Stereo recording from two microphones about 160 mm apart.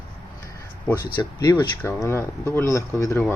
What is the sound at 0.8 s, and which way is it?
Speech, 15° left (ahead or behind).